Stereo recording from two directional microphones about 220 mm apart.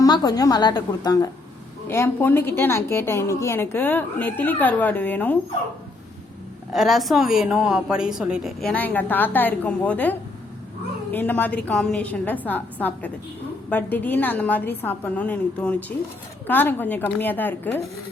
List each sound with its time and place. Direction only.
0.0 s a woman's voice: 15° left (ahead or behind)
6.7 s a woman's voice: centre (ahead or behind)